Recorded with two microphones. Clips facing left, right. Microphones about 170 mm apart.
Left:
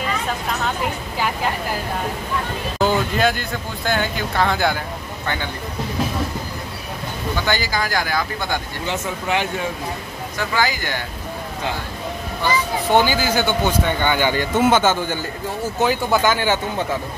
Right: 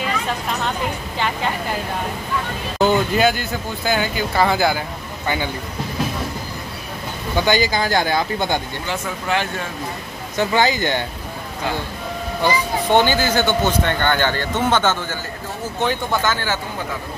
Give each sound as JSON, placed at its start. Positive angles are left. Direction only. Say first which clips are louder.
{"t": 1.1, "sound": "speech", "louder": "even", "side_deg": 5}
{"t": 2.8, "sound": "speech", "louder": "right 2 dB", "side_deg": 0}
{"t": 7.4, "sound": "speech", "louder": "right 5 dB", "side_deg": -20}
{"t": 8.8, "sound": "speech", "louder": "left 1 dB", "side_deg": 20}
{"t": 10.3, "sound": "speech", "louder": "right 4 dB", "side_deg": -25}
{"t": 12.9, "sound": "speech", "louder": "right 1 dB", "side_deg": 5}